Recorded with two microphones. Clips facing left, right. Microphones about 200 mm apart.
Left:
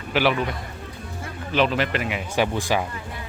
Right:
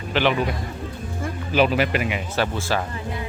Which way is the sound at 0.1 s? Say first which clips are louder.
Even; 10° left (ahead or behind).